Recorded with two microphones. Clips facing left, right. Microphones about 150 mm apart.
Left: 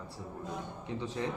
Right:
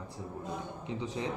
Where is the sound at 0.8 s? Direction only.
15° right (ahead or behind).